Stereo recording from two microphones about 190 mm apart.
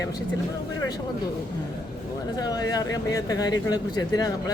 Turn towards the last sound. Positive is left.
turn(degrees=20)  # may be behind; listen again after turning